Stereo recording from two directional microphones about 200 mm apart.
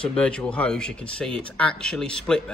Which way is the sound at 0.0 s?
5° left (ahead or behind).